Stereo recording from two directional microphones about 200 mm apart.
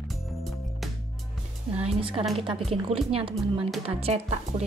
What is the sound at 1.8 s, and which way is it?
A woman's voice, 30° right (ahead or behind).